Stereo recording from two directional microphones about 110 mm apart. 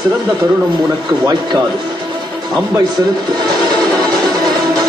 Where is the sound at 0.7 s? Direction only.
40° right (ahead or behind).